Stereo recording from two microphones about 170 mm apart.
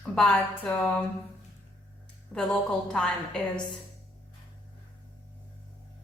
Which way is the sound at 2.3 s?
5° left (ahead or behind).